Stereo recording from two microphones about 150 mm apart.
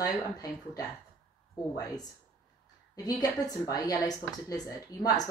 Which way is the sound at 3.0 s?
25° left (ahead or behind).